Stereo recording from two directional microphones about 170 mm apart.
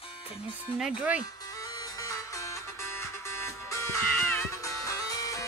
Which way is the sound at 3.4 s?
15° left (ahead or behind).